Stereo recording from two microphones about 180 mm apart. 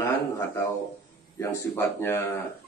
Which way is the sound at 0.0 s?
15° left (ahead or behind).